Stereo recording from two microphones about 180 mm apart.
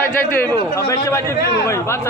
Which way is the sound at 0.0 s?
10° left (ahead or behind).